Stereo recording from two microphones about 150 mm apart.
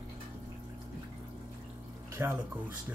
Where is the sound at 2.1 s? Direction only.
15° right (ahead or behind).